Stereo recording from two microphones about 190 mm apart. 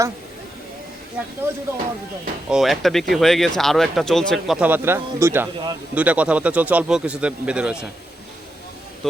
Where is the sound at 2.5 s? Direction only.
Centre (ahead or behind).